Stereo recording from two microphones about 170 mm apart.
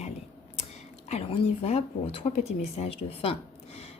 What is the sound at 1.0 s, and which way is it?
Speech, 40° left (ahead or behind).